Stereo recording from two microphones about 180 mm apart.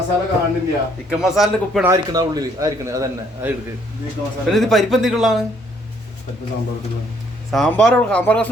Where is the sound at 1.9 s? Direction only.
20° right (ahead or behind).